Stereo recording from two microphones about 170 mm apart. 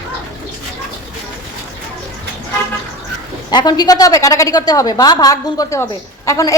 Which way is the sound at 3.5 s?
25° left (ahead or behind).